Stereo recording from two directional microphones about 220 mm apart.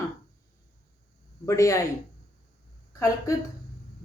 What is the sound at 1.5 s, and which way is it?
Speech, 15° left (ahead or behind).